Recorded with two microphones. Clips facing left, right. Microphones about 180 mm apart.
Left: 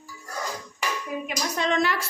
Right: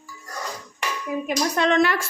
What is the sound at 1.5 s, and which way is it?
Speech, 65° right (ahead or behind).